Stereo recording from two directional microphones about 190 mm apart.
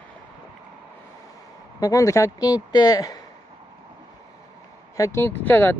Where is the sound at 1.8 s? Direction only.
20° left (ahead or behind).